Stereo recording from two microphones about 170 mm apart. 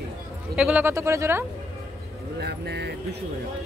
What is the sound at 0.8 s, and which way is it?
Speech, 15° right (ahead or behind).